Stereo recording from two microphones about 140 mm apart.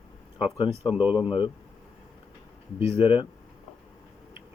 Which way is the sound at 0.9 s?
10° right (ahead or behind).